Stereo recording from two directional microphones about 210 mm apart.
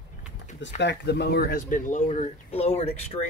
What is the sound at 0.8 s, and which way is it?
Speech, 55° left (ahead or behind).